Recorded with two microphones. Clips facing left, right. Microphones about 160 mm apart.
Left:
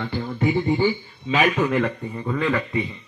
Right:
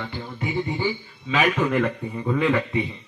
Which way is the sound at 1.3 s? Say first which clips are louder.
Left 1 dB; centre (ahead or behind).